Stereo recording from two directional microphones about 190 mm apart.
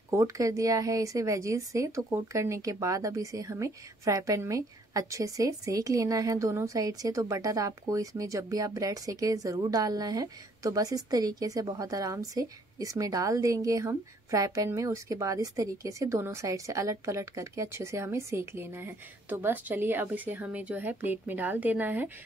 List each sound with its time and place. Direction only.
0.1 s a woman's voice: 15° right (ahead or behind)